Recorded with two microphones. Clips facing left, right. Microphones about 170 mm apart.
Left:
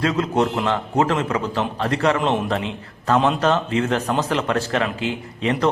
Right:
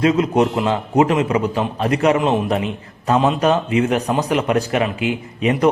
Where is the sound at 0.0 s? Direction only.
20° right (ahead or behind).